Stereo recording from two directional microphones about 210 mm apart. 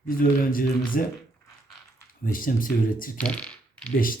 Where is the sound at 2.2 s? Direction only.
40° left (ahead or behind).